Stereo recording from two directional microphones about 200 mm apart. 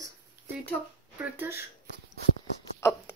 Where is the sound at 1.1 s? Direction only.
10° right (ahead or behind).